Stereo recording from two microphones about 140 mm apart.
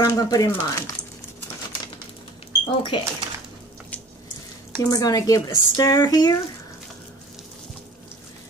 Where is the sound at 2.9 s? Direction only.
40° left (ahead or behind).